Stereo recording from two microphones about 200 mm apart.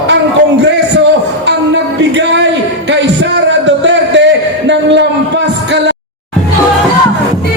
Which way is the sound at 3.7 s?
65° right (ahead or behind).